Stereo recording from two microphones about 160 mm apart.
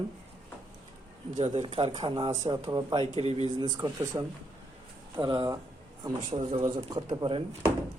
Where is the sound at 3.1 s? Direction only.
40° right (ahead or behind).